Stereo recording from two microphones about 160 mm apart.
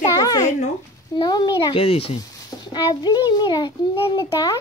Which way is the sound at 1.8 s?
40° left (ahead or behind).